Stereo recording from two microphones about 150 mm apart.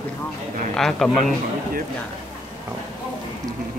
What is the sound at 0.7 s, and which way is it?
Speech, 5° left (ahead or behind).